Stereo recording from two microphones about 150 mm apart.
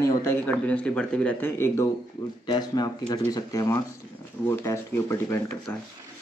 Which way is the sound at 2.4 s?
30° left (ahead or behind).